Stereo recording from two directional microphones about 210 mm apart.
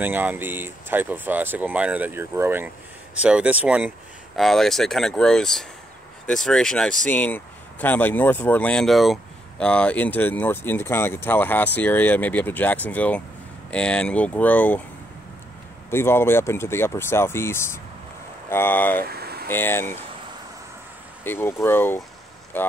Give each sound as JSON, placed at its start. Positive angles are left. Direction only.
{"t": 0.0, "sound": "speech", "side_deg": -10}
{"t": 15.9, "sound": "speech", "side_deg": 10}
{"t": 19.0, "sound": "vehicle", "side_deg": -50}
{"t": 19.5, "sound": "speech", "side_deg": 10}
{"t": 21.2, "sound": "speech", "side_deg": 10}